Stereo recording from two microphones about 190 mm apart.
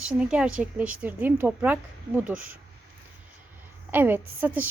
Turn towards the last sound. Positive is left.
turn(degrees=-10)  # may be behind; listen again after turning